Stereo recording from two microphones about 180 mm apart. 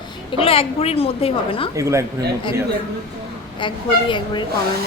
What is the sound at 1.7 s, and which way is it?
Speech, 15° right (ahead or behind).